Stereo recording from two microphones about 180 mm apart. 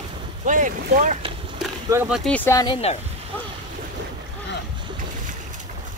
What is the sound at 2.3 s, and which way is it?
Speech, 10° left (ahead or behind).